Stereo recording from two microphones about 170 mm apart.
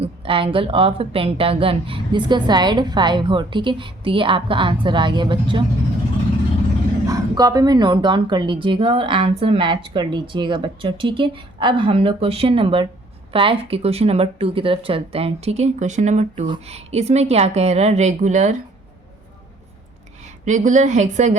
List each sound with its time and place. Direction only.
0.0 s a woman's voice: 35° right (ahead or behind)
7.1 s a woman's voice: 20° right (ahead or behind); by 18.5 s 45° right (ahead or behind)
20.2 s a woman's voice: 45° right (ahead or behind)